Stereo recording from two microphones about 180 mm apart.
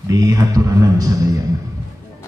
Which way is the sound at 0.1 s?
20° right (ahead or behind).